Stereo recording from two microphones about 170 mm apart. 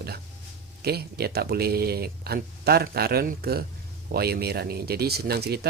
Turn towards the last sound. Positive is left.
turn(degrees=-70)  # may be behind; listen again after turning